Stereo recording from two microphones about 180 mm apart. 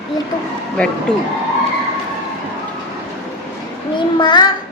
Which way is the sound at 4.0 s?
25° left (ahead or behind).